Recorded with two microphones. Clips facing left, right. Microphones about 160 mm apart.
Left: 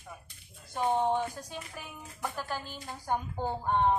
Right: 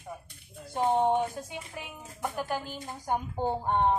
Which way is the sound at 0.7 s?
20° right (ahead or behind).